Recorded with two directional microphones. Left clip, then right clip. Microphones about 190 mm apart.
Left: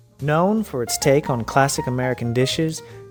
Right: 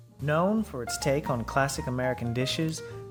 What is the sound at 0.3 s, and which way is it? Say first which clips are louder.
Speech: left 7 dB; 40° left (ahead or behind).